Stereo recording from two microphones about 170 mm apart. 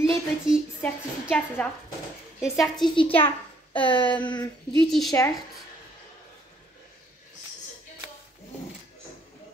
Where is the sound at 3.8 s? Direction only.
30° left (ahead or behind).